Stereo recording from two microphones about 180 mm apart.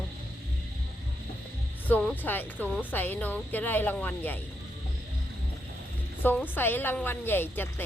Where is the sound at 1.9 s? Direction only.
10° left (ahead or behind).